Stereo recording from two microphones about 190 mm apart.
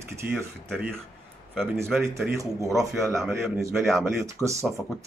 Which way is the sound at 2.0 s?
15° right (ahead or behind).